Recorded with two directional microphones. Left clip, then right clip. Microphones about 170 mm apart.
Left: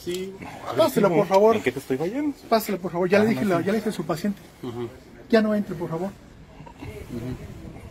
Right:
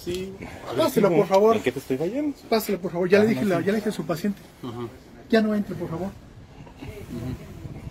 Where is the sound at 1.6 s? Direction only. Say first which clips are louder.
Even; 45° left (ahead or behind).